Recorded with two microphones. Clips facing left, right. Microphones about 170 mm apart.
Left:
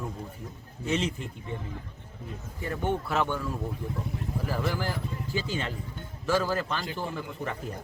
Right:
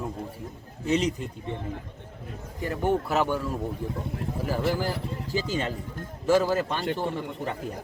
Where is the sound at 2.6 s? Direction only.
40° right (ahead or behind).